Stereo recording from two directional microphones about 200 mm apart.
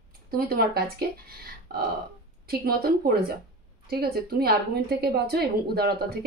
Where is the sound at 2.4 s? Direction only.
50° right (ahead or behind).